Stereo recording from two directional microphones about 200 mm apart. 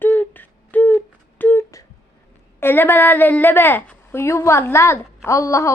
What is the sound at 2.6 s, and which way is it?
A woman's voice, 10° left (ahead or behind).